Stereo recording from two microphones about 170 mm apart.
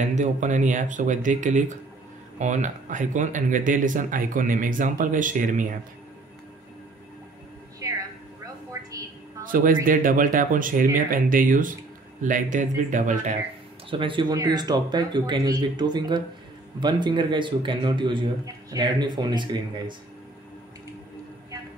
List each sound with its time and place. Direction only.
0.0 s speech: 45° right (ahead or behind)
7.8 s music: 20° right (ahead or behind)
9.4 s speech: 55° right (ahead or behind)
13.8 s speech: 30° right (ahead or behind)